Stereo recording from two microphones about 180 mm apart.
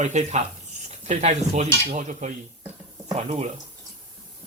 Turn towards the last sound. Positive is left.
turn(degrees=-35)  # may be behind; listen again after turning